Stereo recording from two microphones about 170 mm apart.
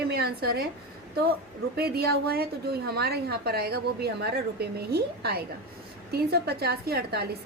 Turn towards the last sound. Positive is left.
turn(degrees=-70)  # may be behind; listen again after turning